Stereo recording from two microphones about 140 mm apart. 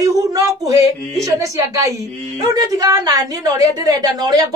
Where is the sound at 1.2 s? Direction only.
25° right (ahead or behind).